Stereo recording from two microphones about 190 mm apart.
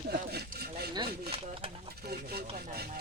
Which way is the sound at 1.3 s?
30° right (ahead or behind).